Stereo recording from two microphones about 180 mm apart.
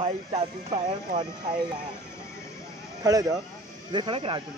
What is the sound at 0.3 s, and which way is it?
Speech, 35° right (ahead or behind).